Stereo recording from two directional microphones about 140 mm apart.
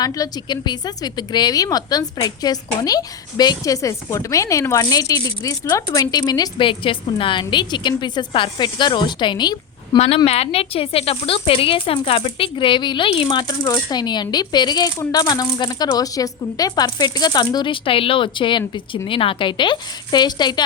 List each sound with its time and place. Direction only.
0.0 s a woman's voice: 25° left (ahead or behind)
10.2 s speech: 45° left (ahead or behind); by 20.7 s 30° left (ahead or behind)